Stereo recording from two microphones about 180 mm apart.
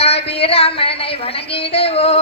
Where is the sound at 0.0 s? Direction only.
35° left (ahead or behind).